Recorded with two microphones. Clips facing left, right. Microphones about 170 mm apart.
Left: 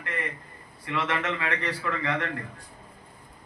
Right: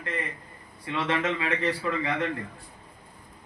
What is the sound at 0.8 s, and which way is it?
A man's voice, 20° right (ahead or behind).